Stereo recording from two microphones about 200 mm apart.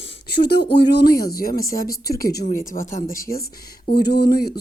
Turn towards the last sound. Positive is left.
turn(degrees=50)  # may be behind; listen again after turning